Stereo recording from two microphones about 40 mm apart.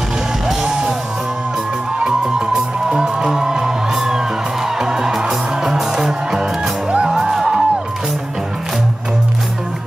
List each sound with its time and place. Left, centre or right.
0.5 s music: centre
2.0 s music: centre
6.9 s music: right
7.2 s music: centre